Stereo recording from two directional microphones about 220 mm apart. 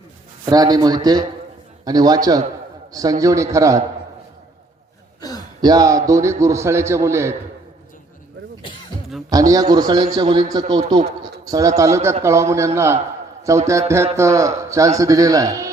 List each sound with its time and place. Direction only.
0.5 s a man's voice: 15° right (ahead or behind)
5.2 s gasp: 15° left (ahead or behind)
5.6 s a man's voice: 15° right (ahead or behind)
9.3 s a man's voice: 15° right (ahead or behind)